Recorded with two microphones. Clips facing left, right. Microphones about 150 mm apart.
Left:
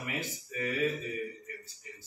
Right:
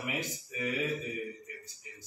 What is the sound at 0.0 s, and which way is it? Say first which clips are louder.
Speech: right 1 dB; 15° right (ahead or behind).